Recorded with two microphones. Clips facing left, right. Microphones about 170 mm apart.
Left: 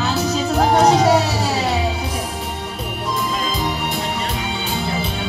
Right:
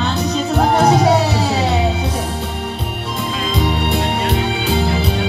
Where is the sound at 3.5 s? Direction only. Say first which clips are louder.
Right 5 dB; 65° right (ahead or behind).